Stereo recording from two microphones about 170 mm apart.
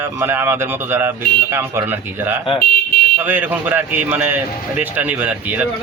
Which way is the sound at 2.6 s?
60° left (ahead or behind).